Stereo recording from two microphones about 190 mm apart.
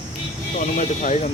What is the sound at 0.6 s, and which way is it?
Speech, 40° left (ahead or behind).